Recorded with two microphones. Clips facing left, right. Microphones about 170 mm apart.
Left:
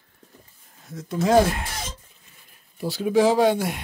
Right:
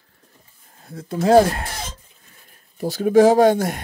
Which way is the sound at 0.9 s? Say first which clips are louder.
Right 4 dB; 30° right (ahead or behind).